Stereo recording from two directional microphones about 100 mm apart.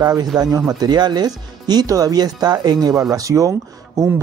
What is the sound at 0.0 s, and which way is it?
Speech, 40° right (ahead or behind).